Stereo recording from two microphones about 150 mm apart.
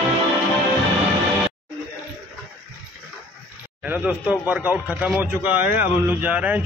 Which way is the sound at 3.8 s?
10° right (ahead or behind).